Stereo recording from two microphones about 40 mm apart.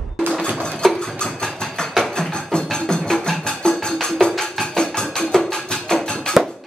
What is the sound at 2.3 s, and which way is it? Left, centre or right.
Music, left.